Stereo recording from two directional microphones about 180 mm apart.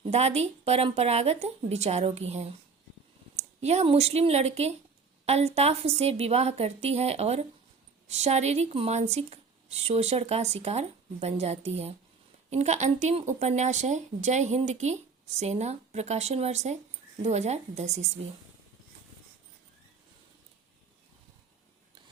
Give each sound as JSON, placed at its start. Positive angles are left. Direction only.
{"t": 0.0, "sound": "speech", "side_deg": -35}